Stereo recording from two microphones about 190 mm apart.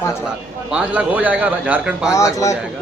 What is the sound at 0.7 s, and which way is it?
A man's voice, 5° right (ahead or behind).